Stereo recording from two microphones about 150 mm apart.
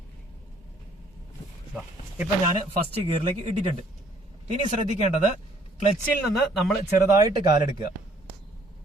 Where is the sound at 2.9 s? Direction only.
40° right (ahead or behind).